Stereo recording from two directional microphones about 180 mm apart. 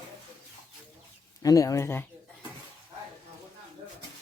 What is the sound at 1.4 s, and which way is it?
Speech, 20° left (ahead or behind).